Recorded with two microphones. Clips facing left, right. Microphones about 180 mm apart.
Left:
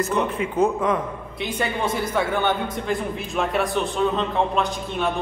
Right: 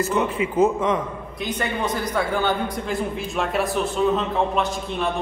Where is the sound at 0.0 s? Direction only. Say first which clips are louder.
Right 1 dB; 5° right (ahead or behind).